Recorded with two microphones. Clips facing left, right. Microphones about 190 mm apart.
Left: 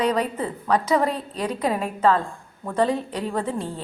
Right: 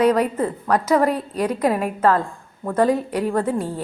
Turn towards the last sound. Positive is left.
turn(degrees=-10)  # may be behind; listen again after turning